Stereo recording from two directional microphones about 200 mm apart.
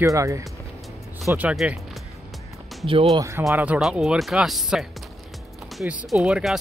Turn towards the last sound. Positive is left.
turn(degrees=-5)  # may be behind; listen again after turning